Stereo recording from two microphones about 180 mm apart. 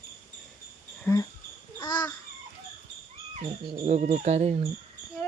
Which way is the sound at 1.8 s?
25° left (ahead or behind).